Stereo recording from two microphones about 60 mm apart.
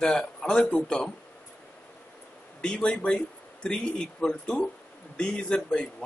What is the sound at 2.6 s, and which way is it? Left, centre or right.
Speech, centre.